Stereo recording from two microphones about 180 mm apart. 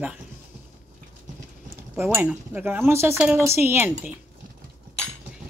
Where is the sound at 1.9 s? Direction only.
10° right (ahead or behind).